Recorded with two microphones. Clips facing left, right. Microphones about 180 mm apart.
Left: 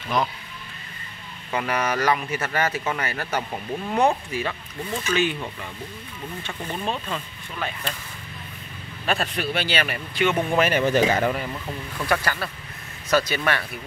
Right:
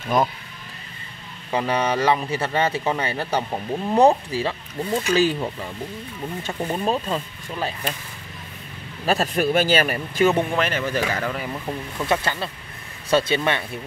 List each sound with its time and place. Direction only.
0.1 s speech: 50° right (ahead or behind)
1.5 s speech: 30° right (ahead or behind)
9.0 s speech: 40° right (ahead or behind)
10.5 s speech: 10° left (ahead or behind)
10.8 s speech: 20° left (ahead or behind)
11.5 s speech: 20° right (ahead or behind)